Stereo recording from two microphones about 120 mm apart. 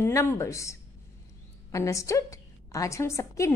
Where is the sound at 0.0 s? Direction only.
20° left (ahead or behind).